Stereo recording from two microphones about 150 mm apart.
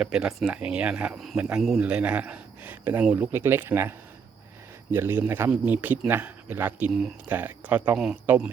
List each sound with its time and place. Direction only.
0.0 s speech: 5° right (ahead or behind)